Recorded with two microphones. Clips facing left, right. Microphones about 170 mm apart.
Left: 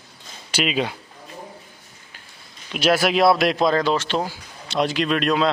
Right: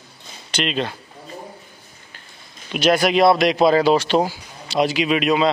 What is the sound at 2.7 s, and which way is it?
Speech, centre (ahead or behind).